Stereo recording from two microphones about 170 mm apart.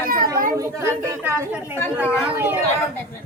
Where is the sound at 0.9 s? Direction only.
15° right (ahead or behind).